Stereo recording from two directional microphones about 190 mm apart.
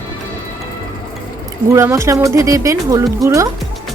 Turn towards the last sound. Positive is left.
turn(degrees=-15)  # may be behind; listen again after turning